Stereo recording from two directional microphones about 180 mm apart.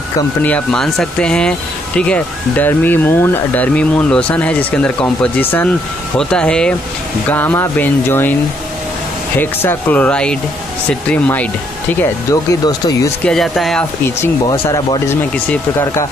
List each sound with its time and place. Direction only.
0.4 s speech: 10° left (ahead or behind)
9.4 s speech: 10° left (ahead or behind)
13.2 s speech: centre (ahead or behind)
14.2 s speech: 20° left (ahead or behind)